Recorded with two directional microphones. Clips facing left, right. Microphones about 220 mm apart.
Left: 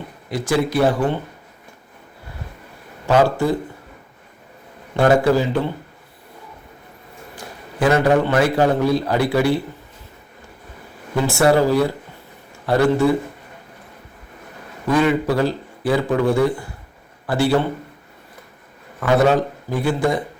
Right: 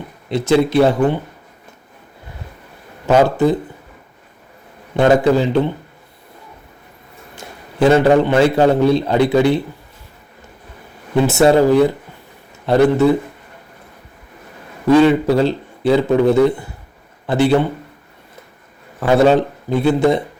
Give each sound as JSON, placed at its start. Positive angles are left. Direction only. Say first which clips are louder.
{"t": 0.3, "sound": "a man's voice", "louder": "right 6 dB", "side_deg": -25}
{"t": 3.1, "sound": "a man's voice", "louder": "right 3 dB", "side_deg": -20}
{"t": 4.9, "sound": "a man's voice", "louder": "right 3 dB", "side_deg": -20}
{"t": 7.3, "sound": "a man's voice", "louder": "right 6 dB", "side_deg": -25}
{"t": 11.1, "sound": "a man's voice", "louder": "right 4 dB", "side_deg": -20}
{"t": 14.8, "sound": "a man's voice", "louder": "right 6 dB", "side_deg": -25}
{"t": 18.9, "sound": "a man's voice", "louder": "right 4 dB", "side_deg": -25}